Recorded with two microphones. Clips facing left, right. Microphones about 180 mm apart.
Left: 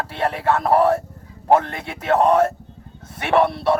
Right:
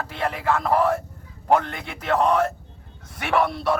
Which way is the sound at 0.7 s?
35° left (ahead or behind).